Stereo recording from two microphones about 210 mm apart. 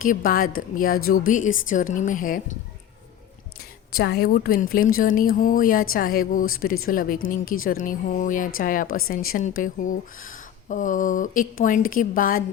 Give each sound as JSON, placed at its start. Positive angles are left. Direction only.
{"t": 0.0, "sound": "speech", "side_deg": 40}
{"t": 3.9, "sound": "speech", "side_deg": 50}